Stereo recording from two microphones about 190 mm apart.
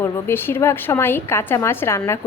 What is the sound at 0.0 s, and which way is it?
A woman's voice, 10° left (ahead or behind).